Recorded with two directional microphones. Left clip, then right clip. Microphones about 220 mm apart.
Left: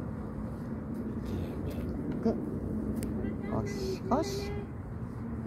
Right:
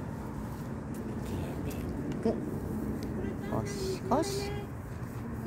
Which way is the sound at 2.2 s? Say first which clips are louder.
Even; 5° right (ahead or behind).